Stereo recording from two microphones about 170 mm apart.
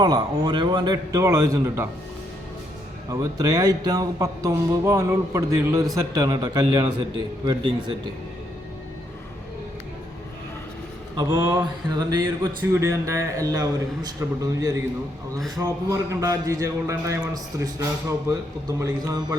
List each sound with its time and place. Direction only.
0.0 s a man's voice: 25° right (ahead or behind)
3.1 s speech: 20° right (ahead or behind)
11.2 s speech: 20° right (ahead or behind)